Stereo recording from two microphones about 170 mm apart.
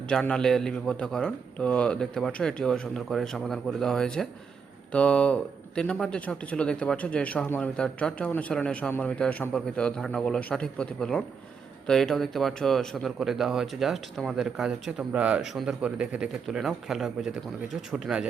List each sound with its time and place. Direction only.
0.1 s speech: 5° left (ahead or behind)